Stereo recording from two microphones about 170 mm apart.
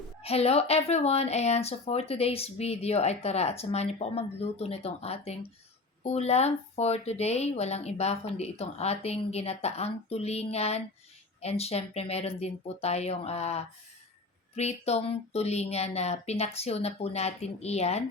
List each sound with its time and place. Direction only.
0.2 s speech: 35° left (ahead or behind)